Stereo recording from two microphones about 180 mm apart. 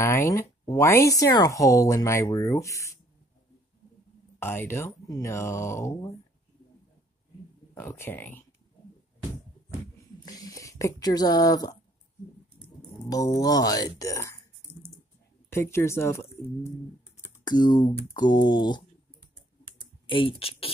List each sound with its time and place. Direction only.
0.0 s speech: 15° left (ahead or behind)
4.4 s speech: 15° left (ahead or behind)
7.7 s speech: 15° left (ahead or behind)
10.2 s speech: 20° left (ahead or behind)
15.5 s speech: 15° left (ahead or behind)
17.5 s speech: 25° left (ahead or behind)
20.1 s speech: 30° left (ahead or behind)